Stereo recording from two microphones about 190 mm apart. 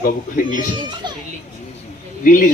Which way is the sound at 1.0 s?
25° right (ahead or behind).